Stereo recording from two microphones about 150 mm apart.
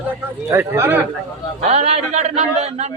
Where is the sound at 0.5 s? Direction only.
15° right (ahead or behind).